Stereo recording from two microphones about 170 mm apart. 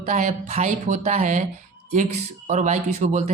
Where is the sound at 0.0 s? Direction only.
45° right (ahead or behind).